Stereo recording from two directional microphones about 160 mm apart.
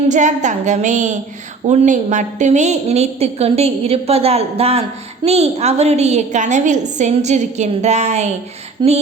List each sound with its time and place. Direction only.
0.1 s a woman's voice: 50° right (ahead or behind)
8.8 s female singing: 30° right (ahead or behind)